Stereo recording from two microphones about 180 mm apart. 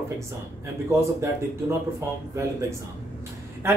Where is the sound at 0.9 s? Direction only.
15° right (ahead or behind).